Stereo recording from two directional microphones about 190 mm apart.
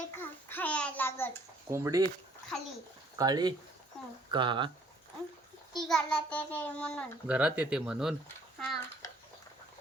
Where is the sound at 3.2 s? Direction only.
20° right (ahead or behind).